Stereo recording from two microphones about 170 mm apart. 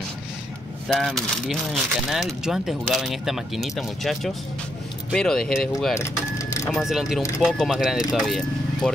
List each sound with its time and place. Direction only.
0.9 s speech: centre (ahead or behind)
5.9 s vehicle: 15° left (ahead or behind)
6.7 s speech: centre (ahead or behind)